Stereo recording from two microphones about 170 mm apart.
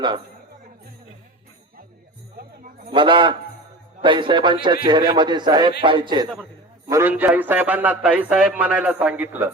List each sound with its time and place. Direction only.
2.9 s a man's voice: 30° right (ahead or behind)
6.9 s a man's voice: 10° right (ahead or behind)